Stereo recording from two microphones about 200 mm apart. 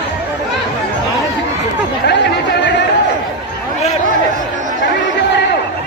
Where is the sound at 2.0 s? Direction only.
60° left (ahead or behind).